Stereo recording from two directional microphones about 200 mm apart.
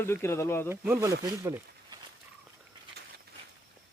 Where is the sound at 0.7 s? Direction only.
10° right (ahead or behind).